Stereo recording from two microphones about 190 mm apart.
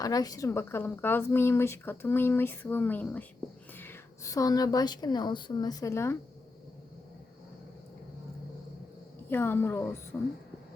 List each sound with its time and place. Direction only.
0.0 s a woman's voice: 20° left (ahead or behind)
9.3 s a woman's voice: 10° left (ahead or behind)